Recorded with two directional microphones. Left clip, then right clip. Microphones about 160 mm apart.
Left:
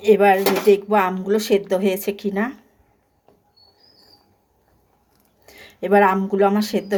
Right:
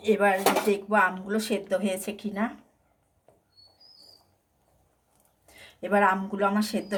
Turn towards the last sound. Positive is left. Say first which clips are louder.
# left 7 dB
turn(degrees=50)  # may be behind; listen again after turning